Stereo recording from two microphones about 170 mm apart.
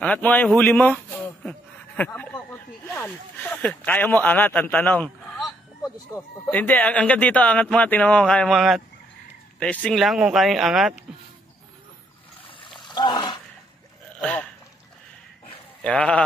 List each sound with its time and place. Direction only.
0.0 s a man's voice: 10° left (ahead or behind)
12.4 s splash: 30° left (ahead or behind)
12.8 s a sound: 25° left (ahead or behind)
15.8 s speech: 5° left (ahead or behind)